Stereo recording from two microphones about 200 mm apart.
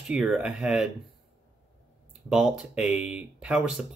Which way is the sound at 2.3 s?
5° right (ahead or behind).